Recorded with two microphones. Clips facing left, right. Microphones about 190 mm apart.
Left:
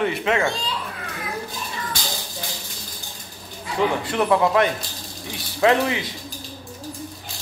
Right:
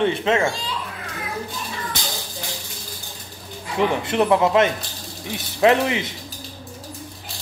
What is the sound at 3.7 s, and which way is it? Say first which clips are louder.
A man's voice: right 2 dB; 20° right (ahead or behind).